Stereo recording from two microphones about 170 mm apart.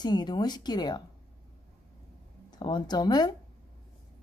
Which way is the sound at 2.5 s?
25° left (ahead or behind).